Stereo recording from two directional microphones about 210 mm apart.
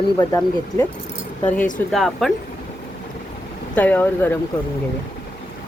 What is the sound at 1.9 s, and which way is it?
Speech, centre (ahead or behind).